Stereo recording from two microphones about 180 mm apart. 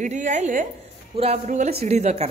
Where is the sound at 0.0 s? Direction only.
45° right (ahead or behind).